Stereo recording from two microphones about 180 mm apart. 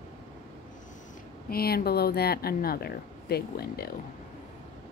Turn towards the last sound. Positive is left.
turn(degrees=60)  # may be behind; listen again after turning